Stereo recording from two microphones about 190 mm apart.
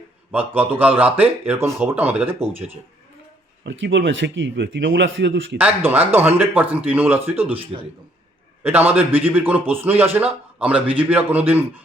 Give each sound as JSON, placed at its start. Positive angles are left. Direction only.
{"t": 0.3, "sound": "speech", "side_deg": -10}
{"t": 3.7, "sound": "a man's voice", "side_deg": -70}
{"t": 5.5, "sound": "speech", "side_deg": -10}
{"t": 7.5, "sound": "a man's voice", "side_deg": -30}
{"t": 8.6, "sound": "speech", "side_deg": -10}